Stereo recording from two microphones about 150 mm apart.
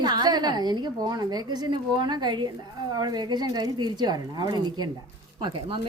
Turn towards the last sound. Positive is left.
turn(degrees=-35)  # may be behind; listen again after turning